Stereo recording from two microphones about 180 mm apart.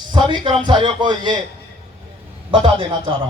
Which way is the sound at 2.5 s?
30° right (ahead or behind).